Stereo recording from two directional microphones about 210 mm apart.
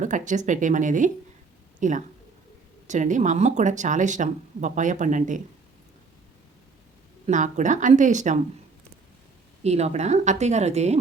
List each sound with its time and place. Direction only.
0.0 s speech: 35° right (ahead or behind)
7.3 s speech: 35° right (ahead or behind)
9.6 s speech: 30° right (ahead or behind)